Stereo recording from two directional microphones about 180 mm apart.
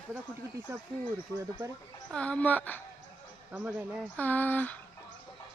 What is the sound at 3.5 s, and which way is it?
Speech, 5° right (ahead or behind).